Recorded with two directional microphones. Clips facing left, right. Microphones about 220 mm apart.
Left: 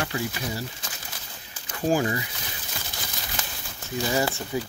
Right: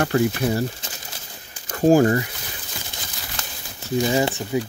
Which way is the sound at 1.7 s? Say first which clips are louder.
Right 9 dB; 45° right (ahead or behind).